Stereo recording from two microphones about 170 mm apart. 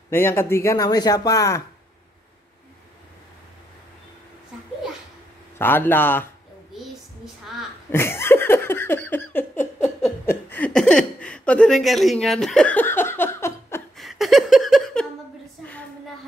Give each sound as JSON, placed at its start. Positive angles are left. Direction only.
{"t": 0.1, "sound": "speech", "side_deg": 15}
{"t": 5.6, "sound": "a man's voice", "side_deg": 10}
{"t": 6.7, "sound": "a sound", "side_deg": 0}
{"t": 7.9, "sound": "laughter", "side_deg": 15}
{"t": 10.2, "sound": "speech", "side_deg": 10}
{"t": 13.9, "sound": "a sound", "side_deg": 0}